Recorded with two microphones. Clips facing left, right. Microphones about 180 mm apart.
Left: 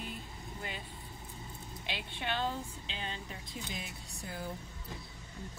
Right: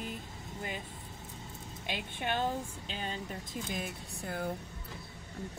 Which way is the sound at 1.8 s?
45° right (ahead or behind).